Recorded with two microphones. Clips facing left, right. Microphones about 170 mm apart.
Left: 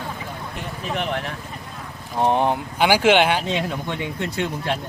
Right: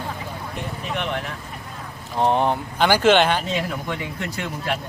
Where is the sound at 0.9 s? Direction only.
35° left (ahead or behind).